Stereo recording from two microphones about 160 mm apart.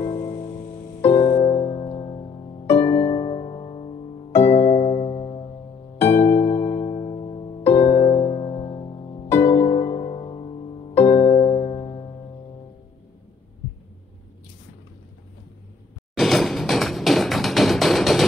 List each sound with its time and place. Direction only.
0.0 s music: 30° left (ahead or behind)
2.8 s harp: 35° left (ahead or behind)
4.3 s music: 15° left (ahead or behind)
4.6 s music: 35° left (ahead or behind)
5.9 s harp: 15° left (ahead or behind)
6.3 s music: 40° left (ahead or behind)
6.6 s music: 25° left (ahead or behind)
16.2 s music: centre (ahead or behind)